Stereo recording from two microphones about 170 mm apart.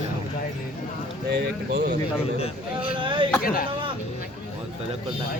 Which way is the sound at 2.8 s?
30° right (ahead or behind).